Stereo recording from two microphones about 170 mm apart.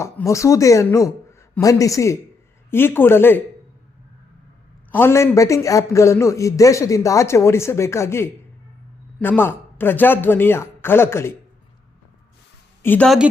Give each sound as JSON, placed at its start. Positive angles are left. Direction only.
{"t": 0.0, "sound": "a man's voice", "side_deg": 15}
{"t": 4.9, "sound": "a man's voice", "side_deg": 15}
{"t": 12.8, "sound": "a woman's voice", "side_deg": 10}